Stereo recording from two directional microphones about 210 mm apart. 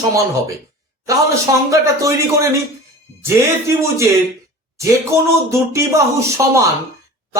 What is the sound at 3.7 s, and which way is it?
Speech, 15° right (ahead or behind).